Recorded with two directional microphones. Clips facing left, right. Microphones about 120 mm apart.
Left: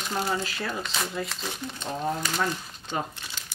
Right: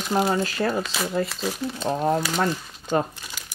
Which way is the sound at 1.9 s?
55° right (ahead or behind).